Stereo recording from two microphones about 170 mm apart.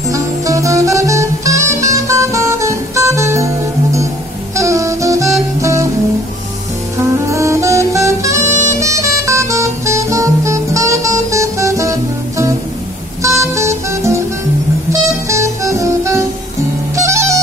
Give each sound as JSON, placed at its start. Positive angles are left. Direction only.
{"t": 0.1, "sound": "music", "side_deg": -20}
{"t": 7.0, "sound": "music", "side_deg": -15}